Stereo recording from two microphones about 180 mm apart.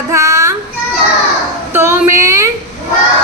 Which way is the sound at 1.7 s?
15° right (ahead or behind).